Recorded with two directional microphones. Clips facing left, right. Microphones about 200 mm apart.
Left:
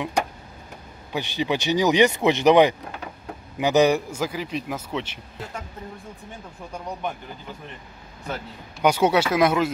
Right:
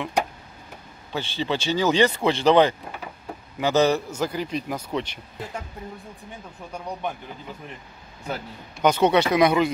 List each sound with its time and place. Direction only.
1.1 s a man's voice: 15° left (ahead or behind)
8.8 s speech: 10° left (ahead or behind)